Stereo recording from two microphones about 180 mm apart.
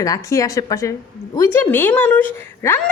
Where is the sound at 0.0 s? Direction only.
20° left (ahead or behind).